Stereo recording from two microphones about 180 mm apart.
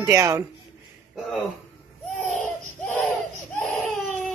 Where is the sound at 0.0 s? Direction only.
15° right (ahead or behind).